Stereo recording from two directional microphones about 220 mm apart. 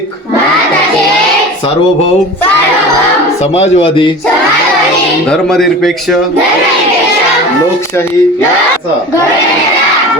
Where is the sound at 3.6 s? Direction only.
25° left (ahead or behind).